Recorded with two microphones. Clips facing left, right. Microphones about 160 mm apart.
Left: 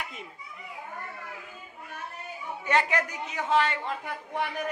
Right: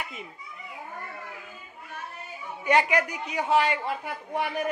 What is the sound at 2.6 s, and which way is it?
A man's voice, 10° right (ahead or behind).